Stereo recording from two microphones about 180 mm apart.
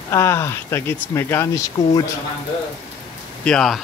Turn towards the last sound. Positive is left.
turn(degrees=5)  # may be behind; listen again after turning